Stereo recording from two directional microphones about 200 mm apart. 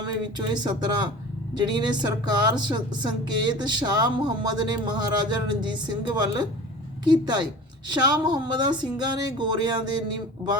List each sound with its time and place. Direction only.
0.0 s speech: 20° right (ahead or behind)